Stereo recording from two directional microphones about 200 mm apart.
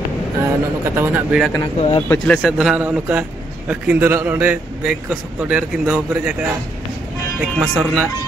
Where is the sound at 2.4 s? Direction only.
5° right (ahead or behind).